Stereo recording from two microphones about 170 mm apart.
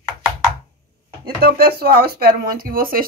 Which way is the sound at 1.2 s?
65° right (ahead or behind).